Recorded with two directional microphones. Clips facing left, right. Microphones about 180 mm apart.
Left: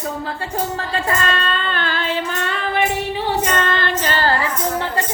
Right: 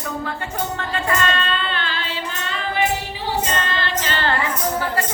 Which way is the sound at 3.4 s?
55° left (ahead or behind).